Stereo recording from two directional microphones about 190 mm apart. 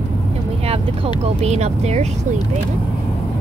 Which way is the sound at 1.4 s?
35° right (ahead or behind).